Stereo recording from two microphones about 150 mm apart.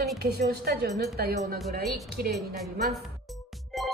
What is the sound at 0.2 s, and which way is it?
A woman's voice, 90° right.